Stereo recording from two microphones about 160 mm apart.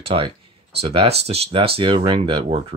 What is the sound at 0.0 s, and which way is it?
Speech, 35° right (ahead or behind).